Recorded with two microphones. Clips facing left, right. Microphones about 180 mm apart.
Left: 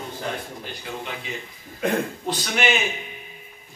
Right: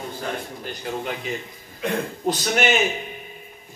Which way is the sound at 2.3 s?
45° right (ahead or behind).